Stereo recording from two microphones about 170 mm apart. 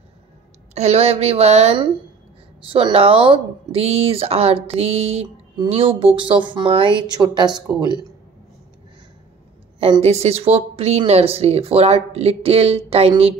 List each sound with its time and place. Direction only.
0.7 s speech: 40° right (ahead or behind)
9.8 s speech: 35° right (ahead or behind)